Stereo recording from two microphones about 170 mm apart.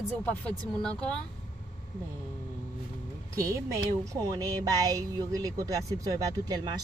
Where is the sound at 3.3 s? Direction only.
20° right (ahead or behind).